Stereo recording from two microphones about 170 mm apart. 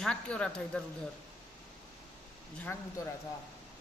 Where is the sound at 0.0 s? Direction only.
5° left (ahead or behind).